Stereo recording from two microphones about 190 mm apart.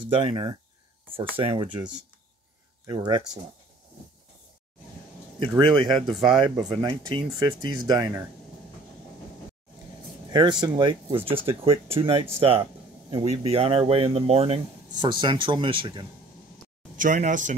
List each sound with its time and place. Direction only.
0.0 s speech: 30° right (ahead or behind)
2.9 s speech: 20° right (ahead or behind)
5.5 s speech: 20° right (ahead or behind)
6.5 s speech: 5° right (ahead or behind)
6.8 s speech: 25° right (ahead or behind)
10.6 s speech: 25° right (ahead or behind)
16.9 s speech: 45° right (ahead or behind)